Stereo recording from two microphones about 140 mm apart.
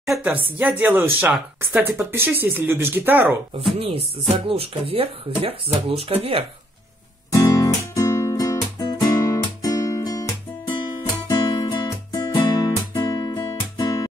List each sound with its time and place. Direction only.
0.1 s speech: 10° right (ahead or behind)
3.8 s speech: 45° right (ahead or behind)
7.3 s guitar: 25° left (ahead or behind)
10.8 s music: 35° left (ahead or behind)